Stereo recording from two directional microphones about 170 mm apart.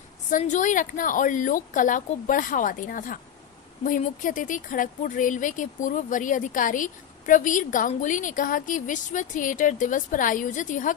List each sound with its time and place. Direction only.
0.3 s speech: 45° left (ahead or behind)